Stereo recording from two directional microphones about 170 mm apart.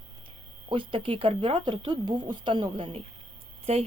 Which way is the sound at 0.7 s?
30° right (ahead or behind).